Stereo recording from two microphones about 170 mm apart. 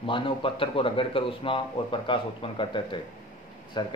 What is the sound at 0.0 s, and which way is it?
A man's voice, 30° left (ahead or behind).